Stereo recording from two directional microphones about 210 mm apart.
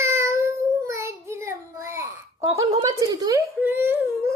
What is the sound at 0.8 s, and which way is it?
Child singing, 15° right (ahead or behind).